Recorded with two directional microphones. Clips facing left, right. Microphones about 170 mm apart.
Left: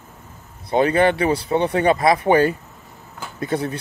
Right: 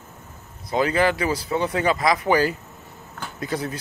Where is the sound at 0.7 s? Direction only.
30° left (ahead or behind).